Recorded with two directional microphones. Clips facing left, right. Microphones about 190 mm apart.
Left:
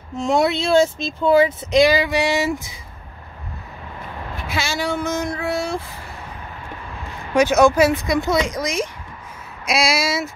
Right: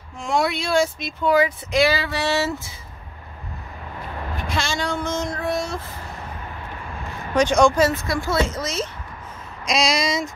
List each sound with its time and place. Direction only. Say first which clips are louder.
0.3 s speech: left 4 dB; 25° left (ahead or behind)
4.5 s speech: left 2 dB; 5° left (ahead or behind)
7.3 s speech: left 2 dB; 5° left (ahead or behind)